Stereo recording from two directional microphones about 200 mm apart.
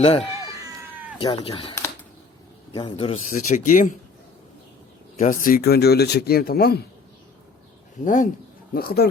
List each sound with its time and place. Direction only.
0.0 s speech: 30° left (ahead or behind)
2.7 s speech: 25° left (ahead or behind)
3.2 s speech: 40° left (ahead or behind)
5.2 s speech: 40° left (ahead or behind)
8.0 s speech: 40° left (ahead or behind)